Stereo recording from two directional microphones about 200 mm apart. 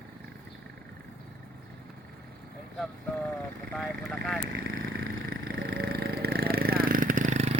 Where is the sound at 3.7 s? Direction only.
Centre (ahead or behind).